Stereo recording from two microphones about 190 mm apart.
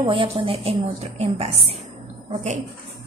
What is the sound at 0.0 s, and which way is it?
A woman's voice, 25° right (ahead or behind).